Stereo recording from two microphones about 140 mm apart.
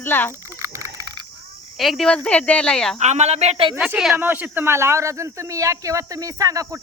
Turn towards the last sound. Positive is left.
turn(degrees=-25)  # may be behind; listen again after turning